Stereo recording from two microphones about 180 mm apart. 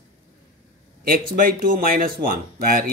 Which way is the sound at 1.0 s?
50° right (ahead or behind).